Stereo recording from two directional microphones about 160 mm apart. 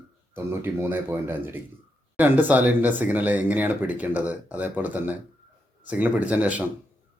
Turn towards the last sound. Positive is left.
turn(degrees=-10)  # may be behind; listen again after turning